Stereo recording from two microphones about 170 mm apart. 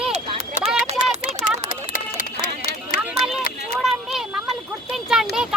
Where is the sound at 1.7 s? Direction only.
50° left (ahead or behind).